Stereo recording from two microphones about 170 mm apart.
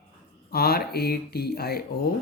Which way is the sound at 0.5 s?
65° left (ahead or behind).